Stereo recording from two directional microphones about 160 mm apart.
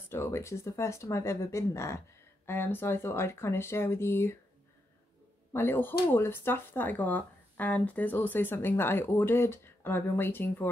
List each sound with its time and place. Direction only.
0.1 s speech: 15° left (ahead or behind)
5.5 s speech: 15° left (ahead or behind)